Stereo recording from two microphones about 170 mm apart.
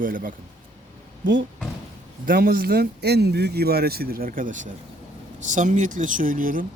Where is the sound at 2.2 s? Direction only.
60° right (ahead or behind).